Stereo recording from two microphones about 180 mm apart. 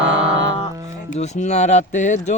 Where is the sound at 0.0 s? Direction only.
5° right (ahead or behind).